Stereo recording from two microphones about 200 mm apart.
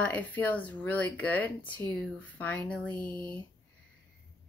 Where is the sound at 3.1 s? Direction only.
25° right (ahead or behind).